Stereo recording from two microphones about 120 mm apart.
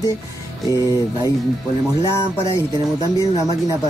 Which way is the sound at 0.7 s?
30° left (ahead or behind).